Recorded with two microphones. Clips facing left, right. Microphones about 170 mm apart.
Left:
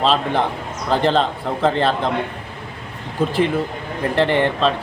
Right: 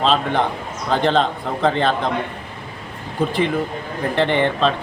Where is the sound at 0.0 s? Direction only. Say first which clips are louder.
Even; centre (ahead or behind).